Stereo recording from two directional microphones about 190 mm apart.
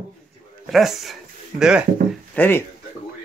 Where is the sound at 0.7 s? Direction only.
Centre (ahead or behind).